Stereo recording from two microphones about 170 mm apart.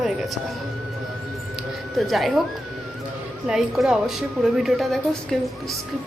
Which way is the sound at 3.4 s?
5° right (ahead or behind).